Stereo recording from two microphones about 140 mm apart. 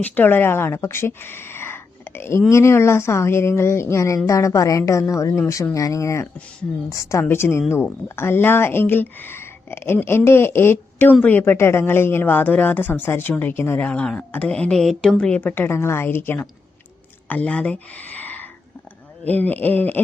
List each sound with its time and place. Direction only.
0.0 s a woman's voice: 10° left (ahead or behind)